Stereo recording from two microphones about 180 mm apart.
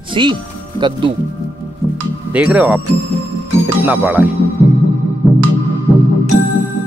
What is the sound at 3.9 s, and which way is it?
Speech, 5° right (ahead or behind).